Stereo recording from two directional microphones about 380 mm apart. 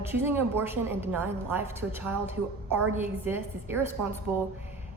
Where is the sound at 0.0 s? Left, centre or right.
Centre.